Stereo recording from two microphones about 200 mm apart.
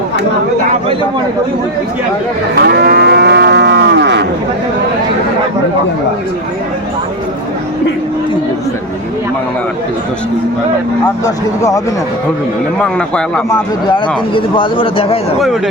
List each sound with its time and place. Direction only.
2.6 s livestock: 50° right (ahead or behind)
12.8 s speech: 5° left (ahead or behind)
13.5 s speech: 25° left (ahead or behind)
15.4 s speech: centre (ahead or behind)